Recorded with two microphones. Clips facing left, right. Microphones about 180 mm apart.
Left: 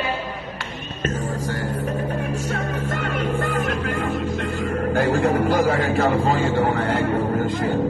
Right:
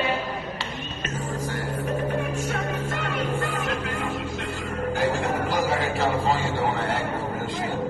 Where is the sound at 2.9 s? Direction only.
50° left (ahead or behind).